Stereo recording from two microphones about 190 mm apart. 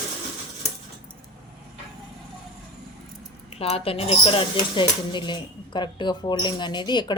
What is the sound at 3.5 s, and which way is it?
Speech, 30° left (ahead or behind).